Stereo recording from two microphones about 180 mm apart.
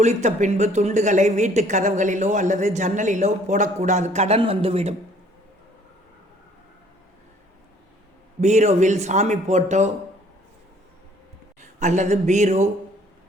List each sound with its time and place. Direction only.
0.0 s speech: 40° right (ahead or behind)
8.4 s speech: 40° right (ahead or behind)
11.6 s speech: 40° right (ahead or behind)